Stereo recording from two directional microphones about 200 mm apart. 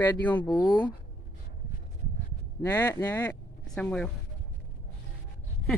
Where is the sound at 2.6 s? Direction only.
10° left (ahead or behind).